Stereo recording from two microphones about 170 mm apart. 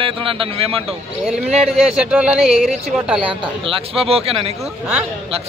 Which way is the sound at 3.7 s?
35° right (ahead or behind).